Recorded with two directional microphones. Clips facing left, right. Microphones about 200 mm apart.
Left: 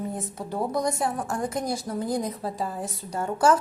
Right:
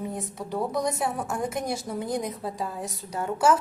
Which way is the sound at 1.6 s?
25° right (ahead or behind).